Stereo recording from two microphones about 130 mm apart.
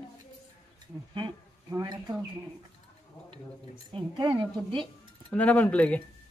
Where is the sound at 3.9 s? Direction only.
40° right (ahead or behind).